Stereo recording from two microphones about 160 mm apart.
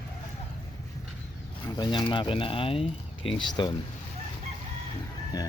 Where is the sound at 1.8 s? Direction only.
30° left (ahead or behind).